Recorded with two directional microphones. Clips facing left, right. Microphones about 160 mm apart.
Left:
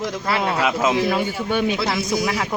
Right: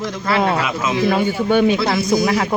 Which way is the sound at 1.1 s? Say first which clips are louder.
Right 5 dB; 45° right (ahead or behind).